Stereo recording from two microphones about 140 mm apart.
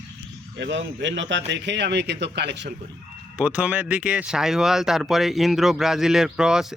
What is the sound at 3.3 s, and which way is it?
Speech, 10° right (ahead or behind).